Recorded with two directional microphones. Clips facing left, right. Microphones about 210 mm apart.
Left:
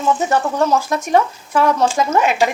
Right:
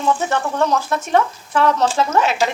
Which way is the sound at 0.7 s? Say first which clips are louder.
Left 2 dB; 10° left (ahead or behind).